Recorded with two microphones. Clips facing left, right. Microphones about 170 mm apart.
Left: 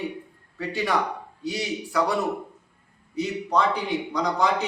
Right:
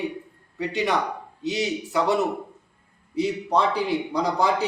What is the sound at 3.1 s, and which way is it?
Speech, 30° right (ahead or behind).